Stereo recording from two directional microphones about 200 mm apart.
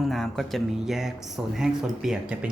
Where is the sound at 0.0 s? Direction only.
Centre (ahead or behind).